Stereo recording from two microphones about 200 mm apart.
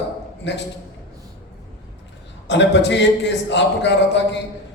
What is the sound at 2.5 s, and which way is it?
A man's voice, 60° left (ahead or behind).